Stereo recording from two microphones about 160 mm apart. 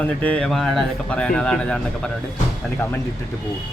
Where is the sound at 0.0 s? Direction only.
10° left (ahead or behind).